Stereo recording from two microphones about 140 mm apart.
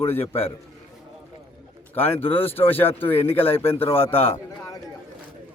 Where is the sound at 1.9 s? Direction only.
15° left (ahead or behind).